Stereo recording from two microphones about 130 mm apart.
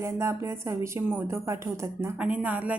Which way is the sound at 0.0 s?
20° right (ahead or behind).